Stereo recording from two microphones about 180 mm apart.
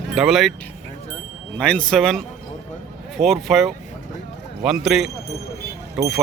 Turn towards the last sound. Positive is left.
turn(degrees=-5)  # may be behind; listen again after turning